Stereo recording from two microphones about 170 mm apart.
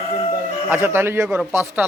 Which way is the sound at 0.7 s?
15° right (ahead or behind).